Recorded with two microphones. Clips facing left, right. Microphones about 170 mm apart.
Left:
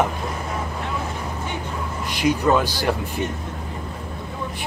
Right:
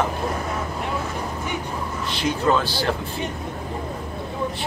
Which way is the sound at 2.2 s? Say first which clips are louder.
Left 3 dB; 15° left (ahead or behind).